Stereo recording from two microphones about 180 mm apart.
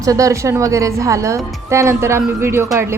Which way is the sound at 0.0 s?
20° right (ahead or behind).